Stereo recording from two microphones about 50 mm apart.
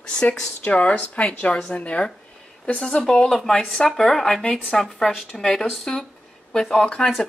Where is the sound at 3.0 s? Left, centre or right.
Centre.